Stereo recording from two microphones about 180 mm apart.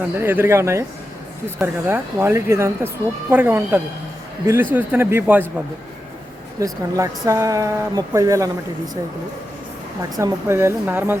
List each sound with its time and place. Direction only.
0.2 s speech: 15° right (ahead or behind)
10.0 s speech: 20° right (ahead or behind)